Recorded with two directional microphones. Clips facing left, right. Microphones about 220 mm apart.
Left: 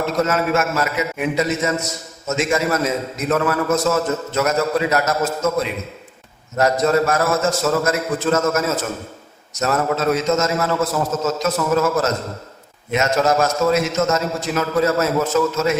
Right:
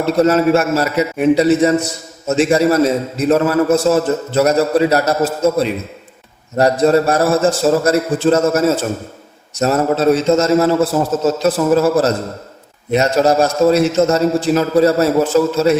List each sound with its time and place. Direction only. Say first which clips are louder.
0.0 s a man's voice: right 7 dB; 35° right (ahead or behind)